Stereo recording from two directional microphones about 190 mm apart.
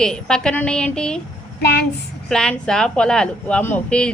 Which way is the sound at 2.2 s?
5° left (ahead or behind).